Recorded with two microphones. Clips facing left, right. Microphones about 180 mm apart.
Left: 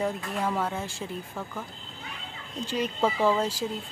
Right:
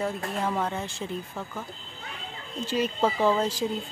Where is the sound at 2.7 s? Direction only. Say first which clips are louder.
Right 2 dB; 5° right (ahead or behind).